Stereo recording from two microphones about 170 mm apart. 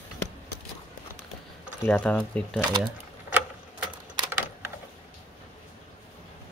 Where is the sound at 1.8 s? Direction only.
10° left (ahead or behind).